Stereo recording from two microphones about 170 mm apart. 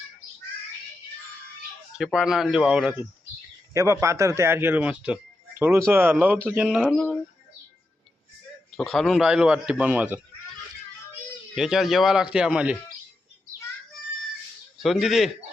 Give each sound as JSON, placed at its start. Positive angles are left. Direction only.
{"t": 2.0, "sound": "a man's voice", "side_deg": 0}
{"t": 3.8, "sound": "a man's voice", "side_deg": -15}
{"t": 8.7, "sound": "a man's voice", "side_deg": 0}
{"t": 11.5, "sound": "a man's voice", "side_deg": -5}
{"t": 14.8, "sound": "a man's voice", "side_deg": 0}